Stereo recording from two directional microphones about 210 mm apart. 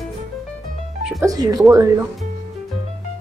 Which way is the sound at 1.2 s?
15° right (ahead or behind).